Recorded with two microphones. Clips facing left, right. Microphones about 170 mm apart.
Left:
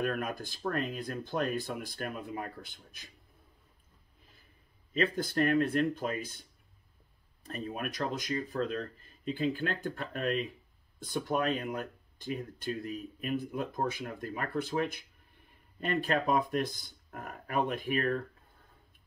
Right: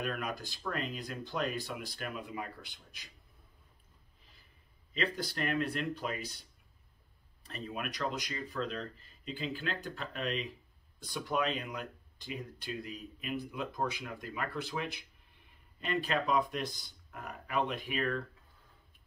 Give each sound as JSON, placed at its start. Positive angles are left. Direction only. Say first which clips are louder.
{"t": 0.0, "sound": "speech", "louder": "left 4 dB", "side_deg": 50}
{"t": 4.9, "sound": "speech", "louder": "left 6 dB", "side_deg": 50}
{"t": 7.4, "sound": "speech", "louder": "left 3 dB", "side_deg": 45}